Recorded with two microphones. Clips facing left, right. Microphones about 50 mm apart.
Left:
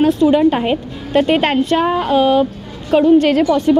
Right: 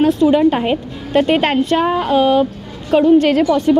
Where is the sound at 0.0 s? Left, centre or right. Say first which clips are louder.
Even; left.